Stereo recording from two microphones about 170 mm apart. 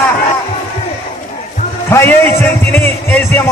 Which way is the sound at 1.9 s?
15° left (ahead or behind).